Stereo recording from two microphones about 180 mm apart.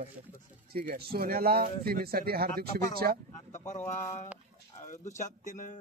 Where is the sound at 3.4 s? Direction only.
40° left (ahead or behind).